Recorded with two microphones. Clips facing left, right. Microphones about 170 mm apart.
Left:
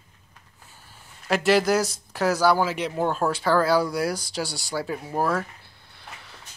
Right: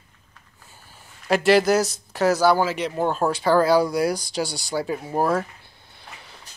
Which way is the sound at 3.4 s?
15° right (ahead or behind).